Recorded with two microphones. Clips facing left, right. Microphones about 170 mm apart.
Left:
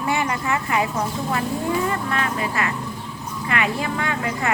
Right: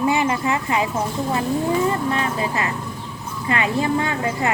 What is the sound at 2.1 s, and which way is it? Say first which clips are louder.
A woman's voice: right 1 dB; 25° right (ahead or behind).